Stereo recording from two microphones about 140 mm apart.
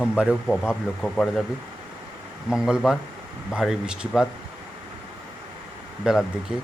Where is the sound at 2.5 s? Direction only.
5° right (ahead or behind).